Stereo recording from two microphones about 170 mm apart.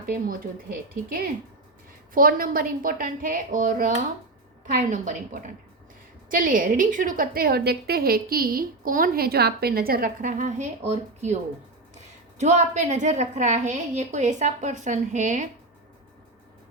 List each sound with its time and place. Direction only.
0.0 s a woman's voice: 55° right (ahead or behind)
2.1 s a woman's voice: 55° right (ahead or behind)
12.4 s a woman's voice: 45° right (ahead or behind)